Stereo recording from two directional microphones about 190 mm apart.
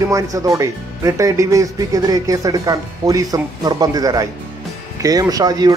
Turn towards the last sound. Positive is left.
turn(degrees=-20)  # may be behind; listen again after turning